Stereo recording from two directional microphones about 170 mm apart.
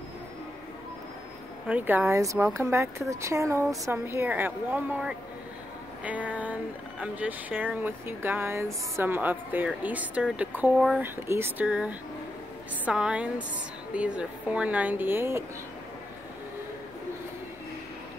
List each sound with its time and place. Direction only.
1.7 s speech: 10° right (ahead or behind)